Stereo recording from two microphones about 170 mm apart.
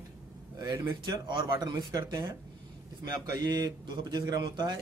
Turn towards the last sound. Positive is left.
turn(degrees=-25)  # may be behind; listen again after turning